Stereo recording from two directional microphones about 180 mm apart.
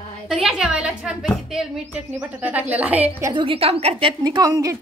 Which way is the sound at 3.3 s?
30° right (ahead or behind).